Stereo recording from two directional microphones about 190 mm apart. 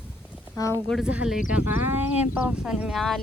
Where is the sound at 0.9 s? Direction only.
Centre (ahead or behind).